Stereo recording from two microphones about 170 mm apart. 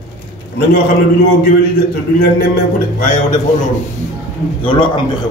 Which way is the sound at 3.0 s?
50° left (ahead or behind).